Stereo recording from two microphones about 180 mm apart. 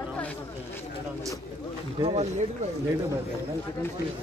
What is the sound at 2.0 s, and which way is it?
Speech, 35° right (ahead or behind).